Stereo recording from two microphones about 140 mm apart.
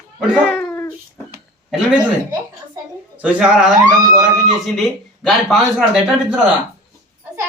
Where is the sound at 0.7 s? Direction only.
15° left (ahead or behind).